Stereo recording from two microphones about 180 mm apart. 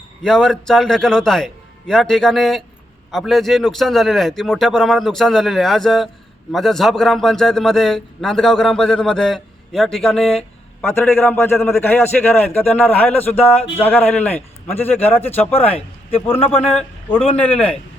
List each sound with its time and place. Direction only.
0.2 s a man's voice: 5° left (ahead or behind)